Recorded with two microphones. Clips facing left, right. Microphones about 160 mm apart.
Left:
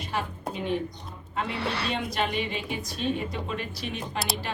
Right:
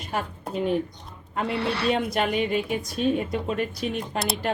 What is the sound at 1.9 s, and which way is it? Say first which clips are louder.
Speech: right 6 dB; 50° right (ahead or behind).